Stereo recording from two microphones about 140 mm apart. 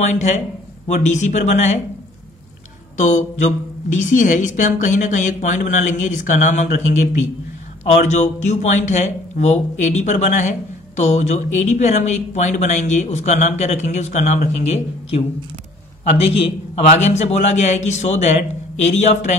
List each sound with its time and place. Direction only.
0.1 s speech: 55° left (ahead or behind)
3.0 s a man's voice: 60° left (ahead or behind)